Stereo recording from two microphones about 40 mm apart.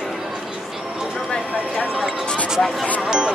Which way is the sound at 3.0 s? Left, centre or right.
Centre.